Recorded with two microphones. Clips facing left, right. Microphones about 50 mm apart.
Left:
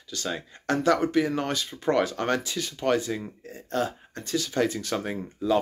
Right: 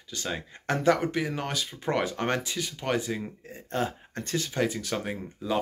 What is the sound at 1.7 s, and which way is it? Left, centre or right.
Speech, centre.